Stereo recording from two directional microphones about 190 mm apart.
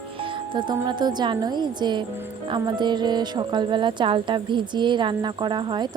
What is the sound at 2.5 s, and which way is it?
Music, 25° right (ahead or behind).